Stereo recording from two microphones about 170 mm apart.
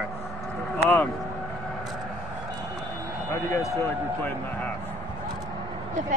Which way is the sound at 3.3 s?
20° left (ahead or behind).